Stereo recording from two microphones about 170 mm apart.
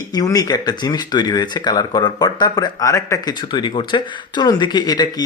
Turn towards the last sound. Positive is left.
turn(degrees=25)  # may be behind; listen again after turning